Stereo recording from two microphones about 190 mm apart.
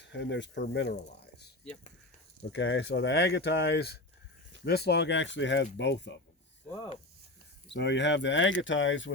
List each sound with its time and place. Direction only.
0.0 s speech: 70° left (ahead or behind)
2.5 s speech: 75° left (ahead or behind)
7.7 s speech: 70° left (ahead or behind)